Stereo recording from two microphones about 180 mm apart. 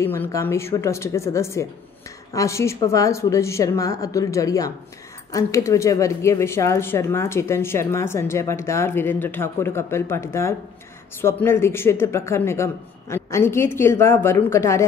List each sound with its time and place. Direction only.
0.0 s speech: 15° left (ahead or behind)